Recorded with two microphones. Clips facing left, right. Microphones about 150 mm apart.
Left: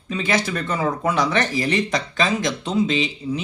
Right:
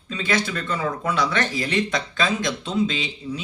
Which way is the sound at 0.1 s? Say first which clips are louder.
Left 2 dB; 15° left (ahead or behind).